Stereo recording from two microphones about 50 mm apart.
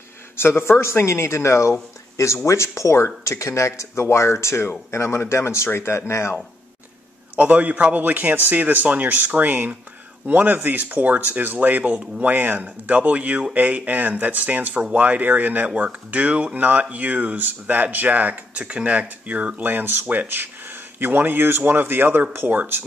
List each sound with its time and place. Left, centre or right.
0.4 s speech: left
2.1 s speech: left
3.3 s speech: left
4.0 s speech: left
7.3 s speech: right